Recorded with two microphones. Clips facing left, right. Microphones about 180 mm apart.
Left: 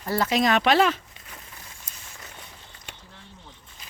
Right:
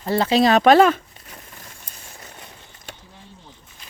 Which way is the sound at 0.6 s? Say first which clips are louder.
Right 7 dB; 45° right (ahead or behind).